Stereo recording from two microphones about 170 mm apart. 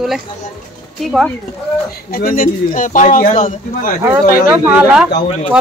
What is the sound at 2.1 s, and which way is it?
Speech, 55° left (ahead or behind).